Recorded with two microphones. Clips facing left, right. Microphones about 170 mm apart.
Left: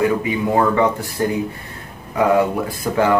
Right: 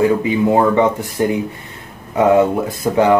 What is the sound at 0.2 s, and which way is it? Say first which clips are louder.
Speech: right 4 dB; 20° right (ahead or behind).